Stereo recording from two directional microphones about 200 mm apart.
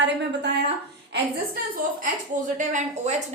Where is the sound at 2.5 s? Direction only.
40° right (ahead or behind).